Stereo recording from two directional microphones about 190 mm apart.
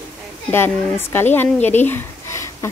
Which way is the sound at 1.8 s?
15° left (ahead or behind).